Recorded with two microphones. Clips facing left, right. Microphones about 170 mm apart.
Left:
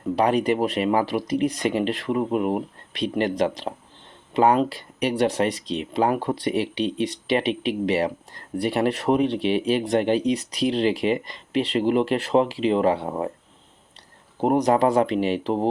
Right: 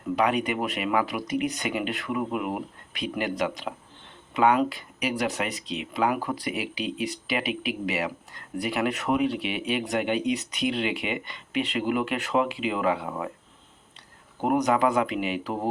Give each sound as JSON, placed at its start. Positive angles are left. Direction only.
{"t": 0.2, "sound": "speech", "side_deg": 35}
{"t": 14.3, "sound": "speech", "side_deg": 30}